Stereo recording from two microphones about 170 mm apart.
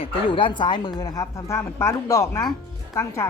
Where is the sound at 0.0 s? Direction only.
30° left (ahead or behind).